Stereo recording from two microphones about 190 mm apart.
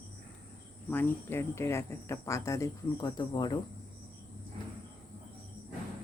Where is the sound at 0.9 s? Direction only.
10° left (ahead or behind).